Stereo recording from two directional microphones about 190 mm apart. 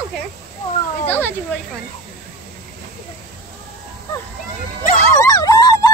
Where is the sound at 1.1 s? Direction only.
10° left (ahead or behind).